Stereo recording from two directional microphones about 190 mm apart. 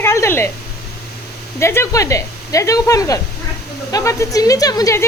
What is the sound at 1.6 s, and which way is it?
Speech, 15° left (ahead or behind).